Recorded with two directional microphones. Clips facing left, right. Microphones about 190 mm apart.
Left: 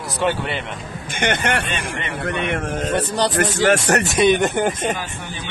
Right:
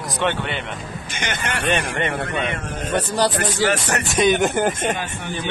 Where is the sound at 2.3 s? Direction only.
60° left (ahead or behind).